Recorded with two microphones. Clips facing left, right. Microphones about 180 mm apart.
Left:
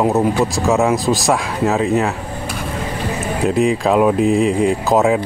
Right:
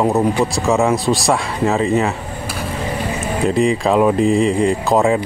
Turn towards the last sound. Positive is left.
turn(degrees=5)  # may be behind; listen again after turning